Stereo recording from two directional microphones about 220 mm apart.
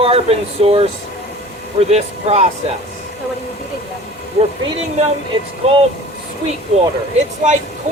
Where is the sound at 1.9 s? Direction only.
30° right (ahead or behind).